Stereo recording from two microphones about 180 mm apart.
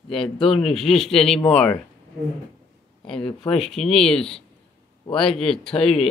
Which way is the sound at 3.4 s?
Centre (ahead or behind).